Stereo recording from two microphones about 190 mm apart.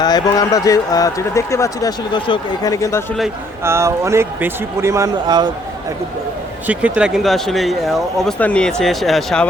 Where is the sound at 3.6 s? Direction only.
15° right (ahead or behind).